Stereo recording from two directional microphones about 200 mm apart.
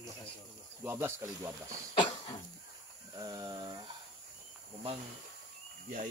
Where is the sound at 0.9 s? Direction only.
10° right (ahead or behind).